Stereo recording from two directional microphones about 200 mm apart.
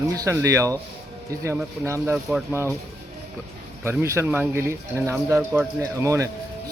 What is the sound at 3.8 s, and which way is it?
Speech, 15° right (ahead or behind).